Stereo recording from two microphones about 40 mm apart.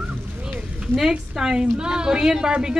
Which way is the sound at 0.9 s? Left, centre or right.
Centre.